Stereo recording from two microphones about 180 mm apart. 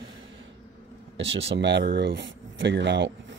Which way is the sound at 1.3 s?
85° right.